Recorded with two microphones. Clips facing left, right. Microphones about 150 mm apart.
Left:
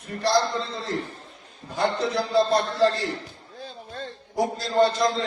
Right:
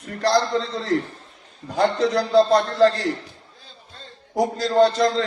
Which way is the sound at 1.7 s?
90° right.